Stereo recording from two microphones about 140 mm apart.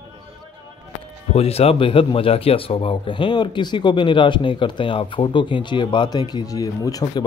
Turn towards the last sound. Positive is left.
turn(degrees=25)  # may be behind; listen again after turning